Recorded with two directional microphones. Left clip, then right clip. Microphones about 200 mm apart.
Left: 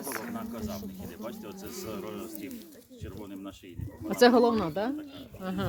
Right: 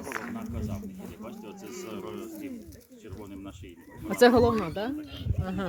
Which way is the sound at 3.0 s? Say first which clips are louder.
Left 1 dB; 55° left (ahead or behind).